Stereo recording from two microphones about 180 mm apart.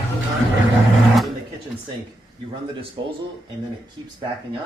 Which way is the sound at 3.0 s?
25° right (ahead or behind).